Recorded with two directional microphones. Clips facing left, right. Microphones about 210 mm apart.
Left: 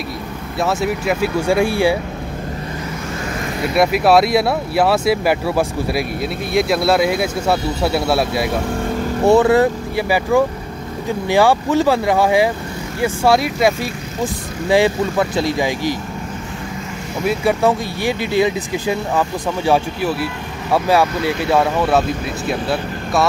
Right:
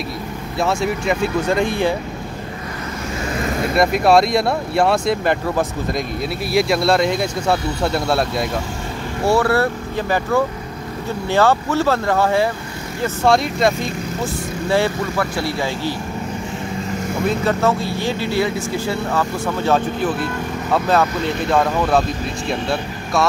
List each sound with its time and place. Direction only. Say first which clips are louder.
0.6 s speech: left 1 dB; centre (ahead or behind)
3.7 s speech: left 1 dB; 5° left (ahead or behind)
9.2 s speech: left 4 dB; 20° left (ahead or behind)
14.2 s speech: left 4 dB; 15° left (ahead or behind)
17.3 s speech: left 3 dB; 10° left (ahead or behind)